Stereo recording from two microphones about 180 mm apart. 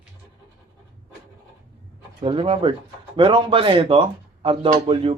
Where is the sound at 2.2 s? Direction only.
30° right (ahead or behind).